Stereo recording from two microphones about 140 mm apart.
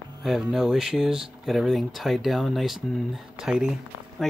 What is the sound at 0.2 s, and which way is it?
Speech, centre (ahead or behind).